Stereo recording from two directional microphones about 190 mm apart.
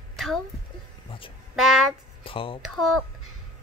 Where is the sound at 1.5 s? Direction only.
Centre (ahead or behind).